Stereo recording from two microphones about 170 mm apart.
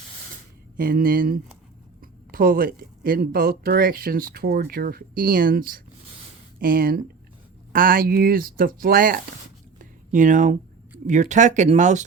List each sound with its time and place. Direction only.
0.8 s speech: 60° right (ahead or behind)
9.7 s a sound: 50° right (ahead or behind)
11.0 s speech: 45° right (ahead or behind)